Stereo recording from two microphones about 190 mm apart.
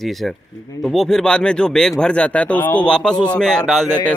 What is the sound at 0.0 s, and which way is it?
Speech, centre (ahead or behind).